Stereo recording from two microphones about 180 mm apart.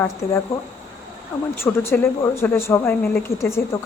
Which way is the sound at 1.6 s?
15° left (ahead or behind).